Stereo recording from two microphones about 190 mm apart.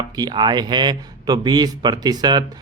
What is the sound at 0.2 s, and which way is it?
A man's voice, 20° right (ahead or behind).